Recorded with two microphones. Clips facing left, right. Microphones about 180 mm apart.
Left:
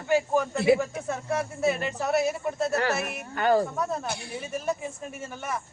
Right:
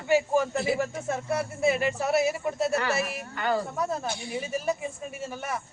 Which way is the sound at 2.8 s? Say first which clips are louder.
Left 1 dB; 50° left (ahead or behind).